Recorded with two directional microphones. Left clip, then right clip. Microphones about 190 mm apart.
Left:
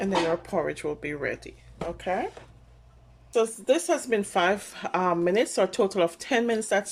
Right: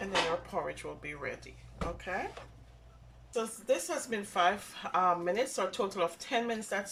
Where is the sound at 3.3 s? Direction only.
55° left (ahead or behind).